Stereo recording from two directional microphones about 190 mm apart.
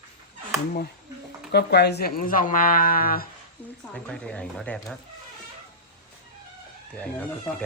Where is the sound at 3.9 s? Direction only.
5° left (ahead or behind).